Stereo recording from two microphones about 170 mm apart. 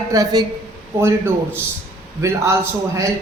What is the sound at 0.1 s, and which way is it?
A woman's voice, 20° right (ahead or behind).